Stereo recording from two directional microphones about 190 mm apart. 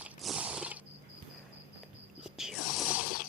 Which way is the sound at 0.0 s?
5° right (ahead or behind).